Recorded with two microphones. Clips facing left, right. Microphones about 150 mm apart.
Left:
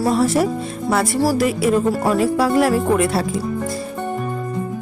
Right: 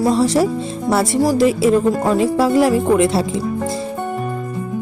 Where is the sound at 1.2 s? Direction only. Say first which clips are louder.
Right 5 dB; 20° right (ahead or behind).